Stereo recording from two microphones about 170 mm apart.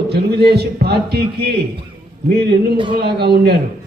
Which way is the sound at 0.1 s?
70° right (ahead or behind).